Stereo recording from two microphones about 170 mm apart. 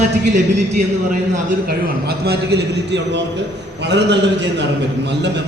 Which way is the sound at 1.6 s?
70° right (ahead or behind).